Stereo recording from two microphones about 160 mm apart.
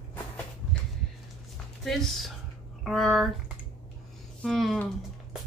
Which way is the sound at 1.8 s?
Centre (ahead or behind).